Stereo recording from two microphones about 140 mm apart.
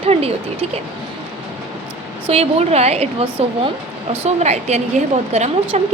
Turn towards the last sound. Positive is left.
turn(degrees=-50)  # may be behind; listen again after turning